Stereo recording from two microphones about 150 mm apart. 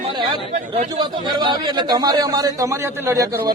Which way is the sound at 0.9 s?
30° right (ahead or behind).